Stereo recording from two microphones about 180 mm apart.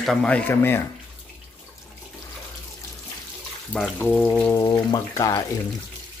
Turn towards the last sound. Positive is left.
turn(degrees=20)  # may be behind; listen again after turning